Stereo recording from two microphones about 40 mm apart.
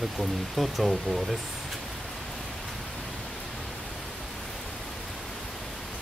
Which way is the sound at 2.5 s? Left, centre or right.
Centre.